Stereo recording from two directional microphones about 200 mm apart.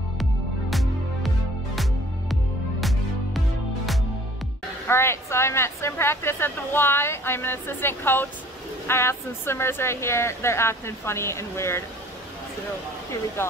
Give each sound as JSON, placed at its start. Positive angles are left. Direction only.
{"t": 0.2, "sound": "music", "side_deg": 0}
{"t": 2.8, "sound": "music", "side_deg": 0}
{"t": 4.8, "sound": "speech", "side_deg": 10}